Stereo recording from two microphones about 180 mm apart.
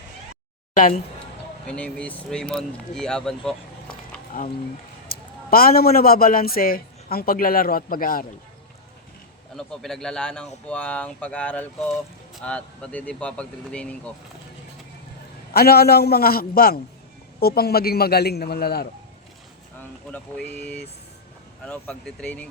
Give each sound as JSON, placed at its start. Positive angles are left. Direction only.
{"t": 1.6, "sound": "speech", "side_deg": 5}
{"t": 4.3, "sound": "a man's voice", "side_deg": 50}
{"t": 9.6, "sound": "speech", "side_deg": 0}
{"t": 15.5, "sound": "a man's voice", "side_deg": 60}
{"t": 20.1, "sound": "speech", "side_deg": 10}
{"t": 21.6, "sound": "speech", "side_deg": 5}